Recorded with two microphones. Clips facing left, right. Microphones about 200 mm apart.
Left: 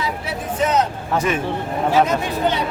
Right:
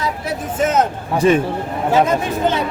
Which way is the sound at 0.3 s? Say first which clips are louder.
Right 2 dB; 50° right (ahead or behind).